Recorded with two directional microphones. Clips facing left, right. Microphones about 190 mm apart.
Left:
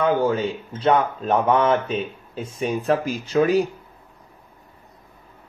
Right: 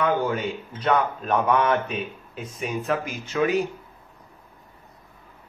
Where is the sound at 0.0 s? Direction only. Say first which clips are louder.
Left 4 dB; 30° left (ahead or behind).